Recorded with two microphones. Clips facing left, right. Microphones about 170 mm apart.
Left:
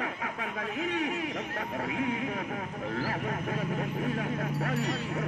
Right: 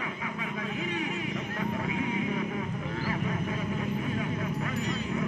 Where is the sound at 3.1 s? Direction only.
50° left (ahead or behind).